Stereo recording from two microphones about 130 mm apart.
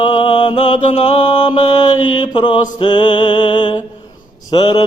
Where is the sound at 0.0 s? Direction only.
40° left (ahead or behind).